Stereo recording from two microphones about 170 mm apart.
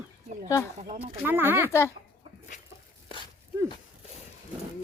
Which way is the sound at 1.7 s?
15° left (ahead or behind).